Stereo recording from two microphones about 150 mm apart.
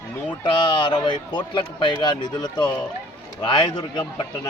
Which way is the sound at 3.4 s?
30° left (ahead or behind).